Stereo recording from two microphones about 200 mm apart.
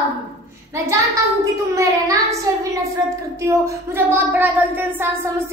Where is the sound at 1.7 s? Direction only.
15° right (ahead or behind).